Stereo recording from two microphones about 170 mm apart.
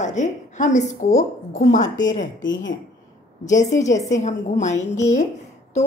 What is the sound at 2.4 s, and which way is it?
Speech, 90° left.